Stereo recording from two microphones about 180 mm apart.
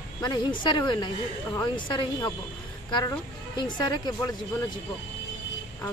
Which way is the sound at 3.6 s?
25° left (ahead or behind).